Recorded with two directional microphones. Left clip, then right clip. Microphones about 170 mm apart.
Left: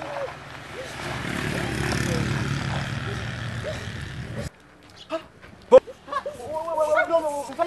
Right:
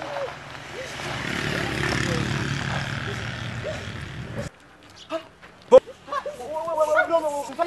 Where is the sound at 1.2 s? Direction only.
60° left (ahead or behind).